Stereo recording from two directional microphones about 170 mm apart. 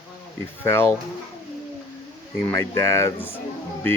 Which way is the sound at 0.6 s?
15° left (ahead or behind).